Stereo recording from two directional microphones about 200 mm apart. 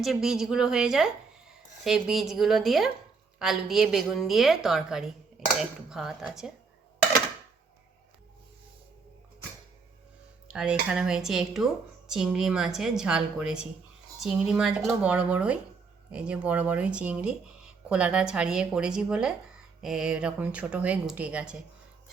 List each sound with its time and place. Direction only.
0.0 s a woman's voice: centre (ahead or behind)
10.5 s speech: 5° right (ahead or behind)